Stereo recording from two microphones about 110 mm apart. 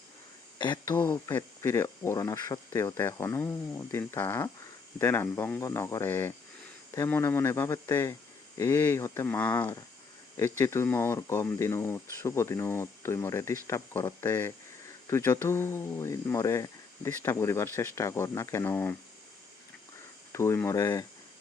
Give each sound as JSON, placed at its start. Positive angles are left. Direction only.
{"t": 0.6, "sound": "speech", "side_deg": 45}
{"t": 0.9, "sound": "speech", "side_deg": 20}
{"t": 20.3, "sound": "speech", "side_deg": 25}